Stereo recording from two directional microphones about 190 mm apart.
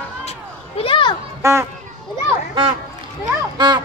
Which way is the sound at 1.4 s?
15° right (ahead or behind).